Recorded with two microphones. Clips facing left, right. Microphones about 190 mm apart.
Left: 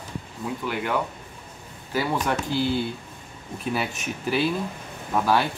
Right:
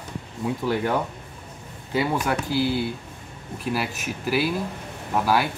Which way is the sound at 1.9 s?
20° right (ahead or behind).